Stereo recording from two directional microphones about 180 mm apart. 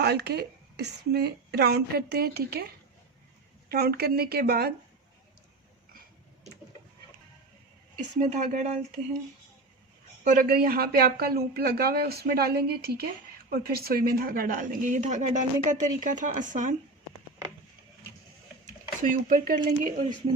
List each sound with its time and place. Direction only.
0.0 s a man's voice: 65° right (ahead or behind)
3.7 s a man's voice: 60° right (ahead or behind)
8.2 s speech: 40° right (ahead or behind)
10.2 s a man's voice: 50° right (ahead or behind)
18.6 s speech: 45° right (ahead or behind)
20.3 s speech: 25° right (ahead or behind)